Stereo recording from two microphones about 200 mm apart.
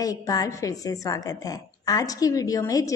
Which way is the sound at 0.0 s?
20° left (ahead or behind).